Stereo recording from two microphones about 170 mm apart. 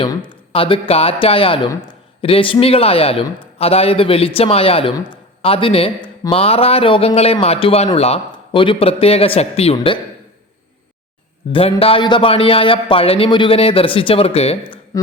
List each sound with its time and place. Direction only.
0.0 s a man's voice: 30° left (ahead or behind)
11.8 s a man's voice: 30° left (ahead or behind)